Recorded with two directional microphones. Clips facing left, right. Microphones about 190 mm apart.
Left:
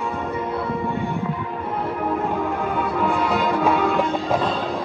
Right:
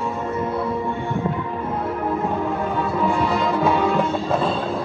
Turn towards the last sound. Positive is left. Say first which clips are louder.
# even
turn(degrees=0)  # may be behind; listen again after turning